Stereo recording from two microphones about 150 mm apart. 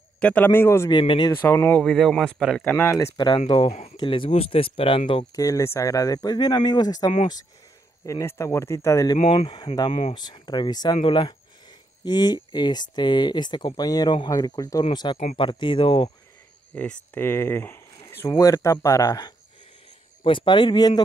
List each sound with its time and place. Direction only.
0.2 s speech: 10° left (ahead or behind)
0.8 s speech: 30° left (ahead or behind)
1.4 s speech: 15° left (ahead or behind)
1.8 s speech: centre (ahead or behind)
3.2 s speech: 30° left (ahead or behind)
5.3 s speech: 20° left (ahead or behind)
9.2 s speech: 40° left (ahead or behind)
15.1 s speech: 40° left (ahead or behind)
16.7 s speech: 10° left (ahead or behind); by 21.0 s 30° left (ahead or behind)